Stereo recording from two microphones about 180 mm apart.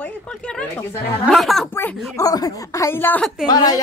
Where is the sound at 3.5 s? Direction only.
20° left (ahead or behind).